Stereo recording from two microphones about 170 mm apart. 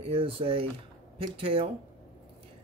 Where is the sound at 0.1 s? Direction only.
35° right (ahead or behind).